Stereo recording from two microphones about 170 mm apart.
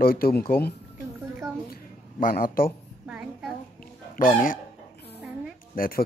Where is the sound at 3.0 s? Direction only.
5° right (ahead or behind).